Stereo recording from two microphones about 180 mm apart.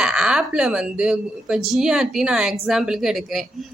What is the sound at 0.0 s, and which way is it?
A woman's voice, 5° right (ahead or behind).